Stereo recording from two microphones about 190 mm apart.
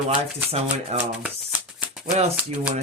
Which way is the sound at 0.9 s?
5° right (ahead or behind).